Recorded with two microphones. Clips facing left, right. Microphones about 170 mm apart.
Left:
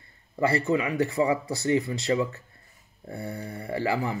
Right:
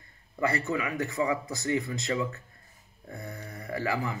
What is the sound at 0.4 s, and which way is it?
A man's voice, 30° left (ahead or behind).